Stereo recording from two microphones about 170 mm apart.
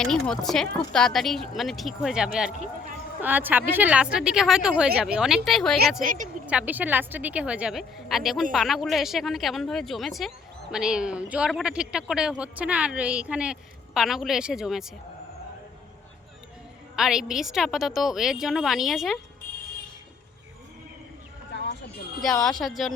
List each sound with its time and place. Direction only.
0.0 s a woman's voice: 5° left (ahead or behind)
16.9 s a woman's voice: 5° right (ahead or behind)
19.4 s vehicle: 55° left (ahead or behind)
22.2 s a woman's voice: 5° left (ahead or behind)